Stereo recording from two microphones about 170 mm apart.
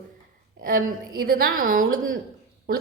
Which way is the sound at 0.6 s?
55° right (ahead or behind).